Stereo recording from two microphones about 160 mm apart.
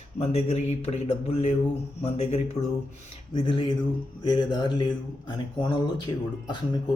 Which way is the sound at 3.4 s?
30° left (ahead or behind).